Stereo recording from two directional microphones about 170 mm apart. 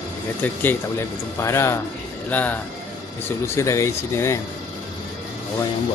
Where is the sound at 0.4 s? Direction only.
10° left (ahead or behind).